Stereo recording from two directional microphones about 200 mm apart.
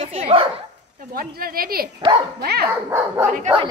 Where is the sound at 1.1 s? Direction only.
50° right (ahead or behind).